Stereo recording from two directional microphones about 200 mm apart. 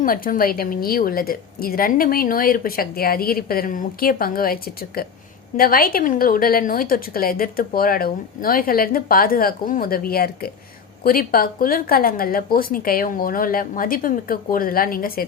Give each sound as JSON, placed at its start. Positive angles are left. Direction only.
{"t": 0.0, "sound": "a woman's voice", "side_deg": 45}